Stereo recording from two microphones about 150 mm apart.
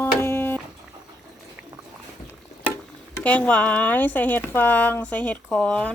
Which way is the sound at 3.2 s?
10° left (ahead or behind).